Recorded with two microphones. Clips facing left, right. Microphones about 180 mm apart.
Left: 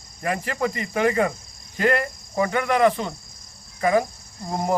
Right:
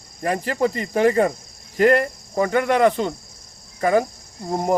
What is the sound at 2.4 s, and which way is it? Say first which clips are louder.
Cricket: right 3 dB; 35° right (ahead or behind).